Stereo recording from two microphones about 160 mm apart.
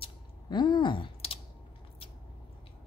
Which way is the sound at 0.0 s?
30° left (ahead or behind).